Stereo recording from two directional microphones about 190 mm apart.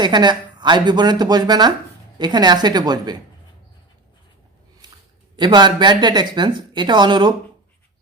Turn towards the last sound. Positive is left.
turn(degrees=-25)  # may be behind; listen again after turning